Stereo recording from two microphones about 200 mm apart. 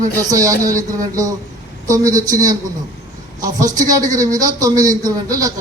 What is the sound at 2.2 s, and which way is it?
Speech, 15° right (ahead or behind).